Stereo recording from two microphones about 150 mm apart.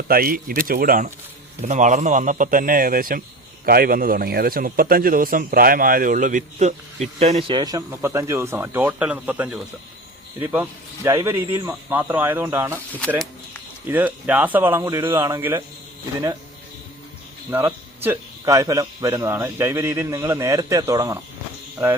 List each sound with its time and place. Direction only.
0.1 s a man's voice: 75° right (ahead or behind)
1.6 s a man's voice: 55° right (ahead or behind)
7.5 s a man's voice: 25° right (ahead or behind)
13.8 s speech: 10° right (ahead or behind)
18.0 s a man's voice: 20° right (ahead or behind)